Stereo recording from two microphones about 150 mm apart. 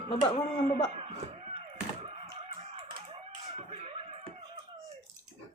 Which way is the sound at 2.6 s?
40° right (ahead or behind).